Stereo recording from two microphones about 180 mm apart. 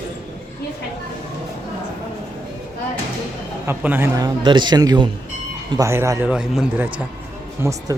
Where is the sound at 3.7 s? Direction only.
10° right (ahead or behind).